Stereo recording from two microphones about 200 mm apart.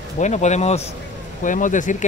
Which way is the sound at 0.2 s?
35° left (ahead or behind).